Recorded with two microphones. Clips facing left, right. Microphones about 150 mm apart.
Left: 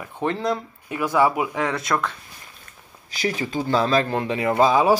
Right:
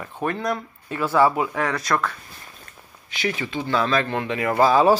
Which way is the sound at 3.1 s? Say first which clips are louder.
Left 1 dB; 40° left (ahead or behind).